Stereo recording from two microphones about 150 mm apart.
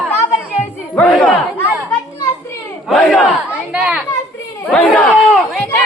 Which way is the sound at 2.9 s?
5° left (ahead or behind).